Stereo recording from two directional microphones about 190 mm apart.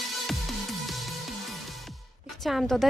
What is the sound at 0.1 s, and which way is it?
Music, centre (ahead or behind).